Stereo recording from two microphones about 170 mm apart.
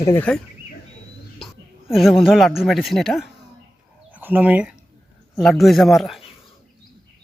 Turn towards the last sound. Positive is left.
turn(degrees=0)  # may be behind; listen again after turning